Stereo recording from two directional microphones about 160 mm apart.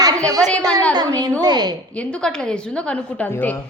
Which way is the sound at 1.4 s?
25° right (ahead or behind).